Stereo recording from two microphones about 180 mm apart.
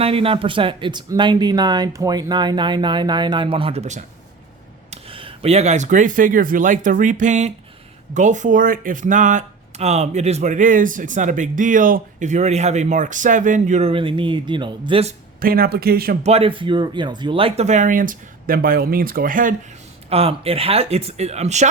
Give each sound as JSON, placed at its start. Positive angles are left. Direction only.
{"t": 0.0, "sound": "speech", "side_deg": -30}
{"t": 15.4, "sound": "speech", "side_deg": -55}
{"t": 16.2, "sound": "speech", "side_deg": -35}
{"t": 20.1, "sound": "speech", "side_deg": -35}